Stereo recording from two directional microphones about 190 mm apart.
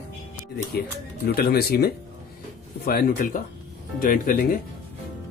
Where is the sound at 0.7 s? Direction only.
55° left (ahead or behind).